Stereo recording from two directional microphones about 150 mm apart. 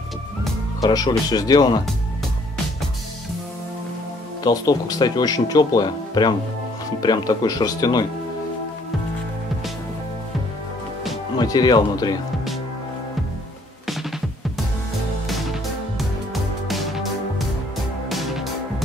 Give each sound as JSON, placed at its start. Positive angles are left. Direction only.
{"t": 0.7, "sound": "speech", "side_deg": 25}
{"t": 4.4, "sound": "speech", "side_deg": 25}
{"t": 11.3, "sound": "speech", "side_deg": 25}
{"t": 16.6, "sound": "music", "side_deg": 0}
{"t": 18.1, "sound": "music", "side_deg": 0}